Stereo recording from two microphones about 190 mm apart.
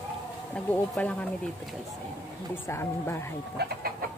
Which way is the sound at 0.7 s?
5° left (ahead or behind).